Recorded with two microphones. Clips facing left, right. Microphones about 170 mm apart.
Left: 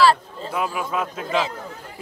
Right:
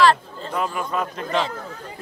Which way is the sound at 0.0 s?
5° left (ahead or behind).